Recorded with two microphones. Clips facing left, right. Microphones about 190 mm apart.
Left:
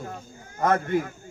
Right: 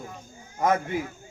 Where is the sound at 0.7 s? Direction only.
55° left (ahead or behind).